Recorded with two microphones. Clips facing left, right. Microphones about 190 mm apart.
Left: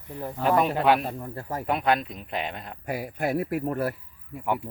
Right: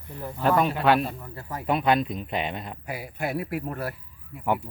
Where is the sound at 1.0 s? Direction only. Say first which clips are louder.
Even; 45° left (ahead or behind).